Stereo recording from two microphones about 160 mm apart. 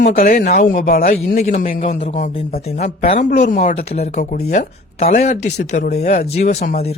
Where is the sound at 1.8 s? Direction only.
40° left (ahead or behind).